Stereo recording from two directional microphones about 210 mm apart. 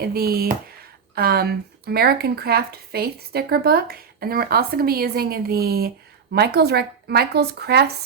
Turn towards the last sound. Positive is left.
turn(degrees=-50)  # may be behind; listen again after turning